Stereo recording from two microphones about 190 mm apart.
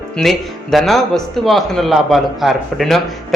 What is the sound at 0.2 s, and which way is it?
A man's voice, centre (ahead or behind).